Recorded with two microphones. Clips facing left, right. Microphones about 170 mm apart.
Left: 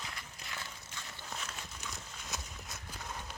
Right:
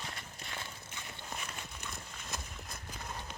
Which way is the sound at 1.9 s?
Centre (ahead or behind).